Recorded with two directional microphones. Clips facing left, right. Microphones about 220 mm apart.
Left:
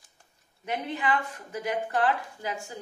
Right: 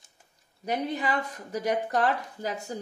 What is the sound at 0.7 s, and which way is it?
Speech, 40° right (ahead or behind).